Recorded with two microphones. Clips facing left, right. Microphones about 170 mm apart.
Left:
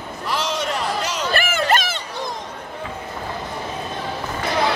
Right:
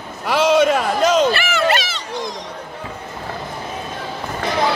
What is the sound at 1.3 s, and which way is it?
Run, 50° left (ahead or behind).